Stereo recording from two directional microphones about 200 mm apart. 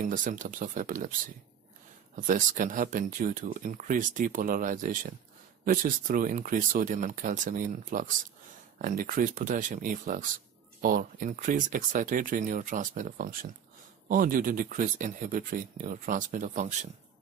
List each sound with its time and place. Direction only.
0.0 s speech: 40° right (ahead or behind)
2.1 s speech: 40° right (ahead or behind)